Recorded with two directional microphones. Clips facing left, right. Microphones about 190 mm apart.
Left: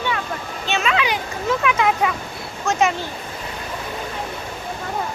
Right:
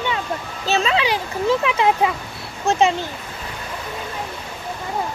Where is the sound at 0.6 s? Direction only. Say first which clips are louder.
Right 2 dB; 30° right (ahead or behind).